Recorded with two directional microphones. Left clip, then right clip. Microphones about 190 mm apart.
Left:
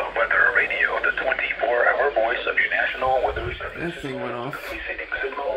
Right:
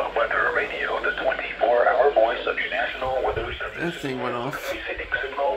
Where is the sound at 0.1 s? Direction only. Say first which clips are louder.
Left 7 dB; 35° left (ahead or behind).